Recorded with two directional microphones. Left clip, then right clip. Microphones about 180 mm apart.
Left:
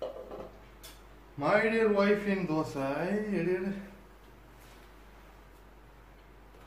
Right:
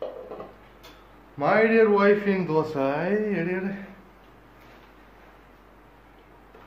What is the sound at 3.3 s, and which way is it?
Speech, 25° right (ahead or behind).